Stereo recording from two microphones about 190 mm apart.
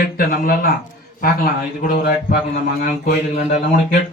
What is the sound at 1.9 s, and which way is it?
Speech, 55° left (ahead or behind).